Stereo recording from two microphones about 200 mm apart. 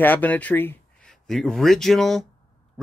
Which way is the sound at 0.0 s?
10° left (ahead or behind).